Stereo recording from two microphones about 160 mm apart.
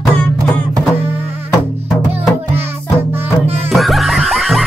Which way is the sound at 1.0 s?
15° right (ahead or behind).